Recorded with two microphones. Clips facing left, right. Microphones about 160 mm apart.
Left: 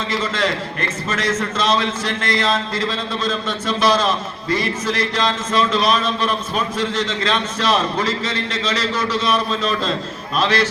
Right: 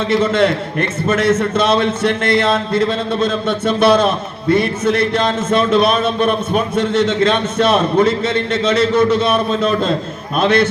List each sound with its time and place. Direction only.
0.1 s a man's voice: 55° right (ahead or behind)